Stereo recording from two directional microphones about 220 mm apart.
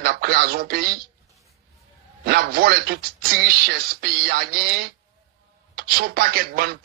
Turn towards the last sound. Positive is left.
turn(degrees=-45)  # may be behind; listen again after turning